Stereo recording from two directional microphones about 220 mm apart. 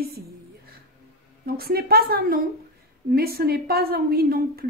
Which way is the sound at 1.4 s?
45° right (ahead or behind).